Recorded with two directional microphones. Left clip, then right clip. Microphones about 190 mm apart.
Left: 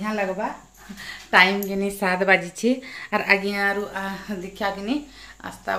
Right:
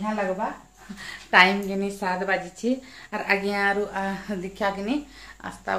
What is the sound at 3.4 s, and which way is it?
A woman's voice, 5° right (ahead or behind).